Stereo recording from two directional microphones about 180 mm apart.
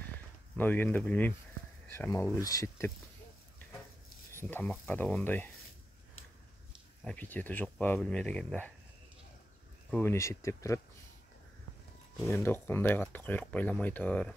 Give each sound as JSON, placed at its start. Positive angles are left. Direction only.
{"t": 0.6, "sound": "speech", "side_deg": 10}
{"t": 4.3, "sound": "speech", "side_deg": 10}
{"t": 7.1, "sound": "speech", "side_deg": 10}
{"t": 9.8, "sound": "speech", "side_deg": 10}
{"t": 12.3, "sound": "speech", "side_deg": 15}